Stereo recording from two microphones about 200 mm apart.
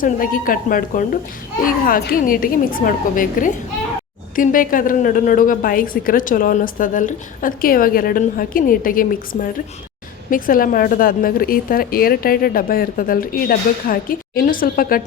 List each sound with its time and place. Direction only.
0.0 s a woman's voice: 45° left (ahead or behind)